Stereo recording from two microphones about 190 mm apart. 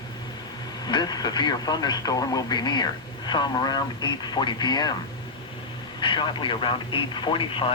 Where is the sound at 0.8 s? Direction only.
20° left (ahead or behind).